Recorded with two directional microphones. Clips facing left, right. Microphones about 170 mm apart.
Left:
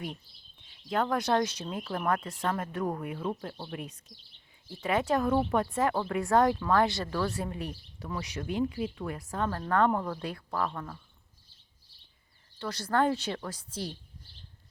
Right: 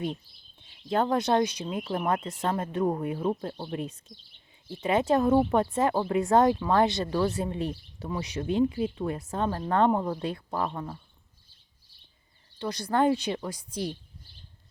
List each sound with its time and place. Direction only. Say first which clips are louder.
0.7 s speech: right 4 dB; 30° right (ahead or behind)
12.5 s speech: right 2 dB; 15° right (ahead or behind)